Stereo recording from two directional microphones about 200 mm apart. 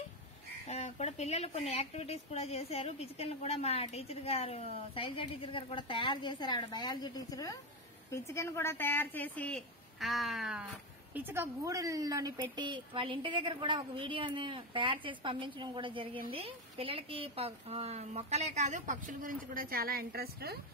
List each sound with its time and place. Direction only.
0.7 s a woman's voice: 35° left (ahead or behind); by 20.5 s 50° right (ahead or behind)